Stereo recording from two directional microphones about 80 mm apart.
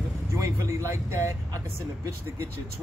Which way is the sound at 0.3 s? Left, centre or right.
Right.